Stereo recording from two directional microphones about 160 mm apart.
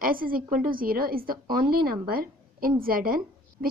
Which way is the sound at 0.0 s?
65° right (ahead or behind).